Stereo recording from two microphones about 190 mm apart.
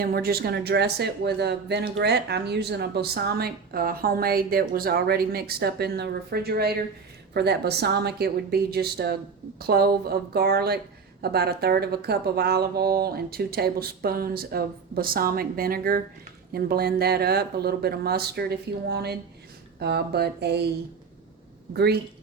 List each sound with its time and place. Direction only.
0.0 s speech: 50° right (ahead or behind)
21.7 s speech: 60° right (ahead or behind)